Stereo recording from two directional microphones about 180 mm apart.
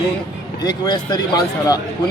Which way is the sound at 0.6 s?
25° left (ahead or behind).